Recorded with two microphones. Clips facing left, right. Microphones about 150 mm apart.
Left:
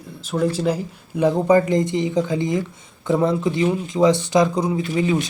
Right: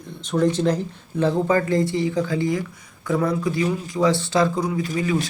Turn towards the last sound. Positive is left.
turn(degrees=25)  # may be behind; listen again after turning